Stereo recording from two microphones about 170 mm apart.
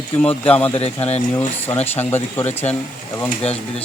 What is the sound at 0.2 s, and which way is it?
Speech, 10° left (ahead or behind).